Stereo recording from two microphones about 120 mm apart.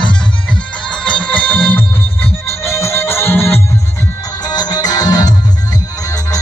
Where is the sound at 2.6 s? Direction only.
20° left (ahead or behind).